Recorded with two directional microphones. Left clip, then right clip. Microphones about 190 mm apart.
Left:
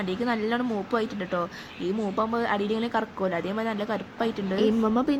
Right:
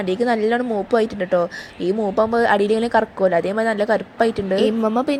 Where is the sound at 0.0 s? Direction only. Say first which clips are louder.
Right 9 dB; 25° right (ahead or behind).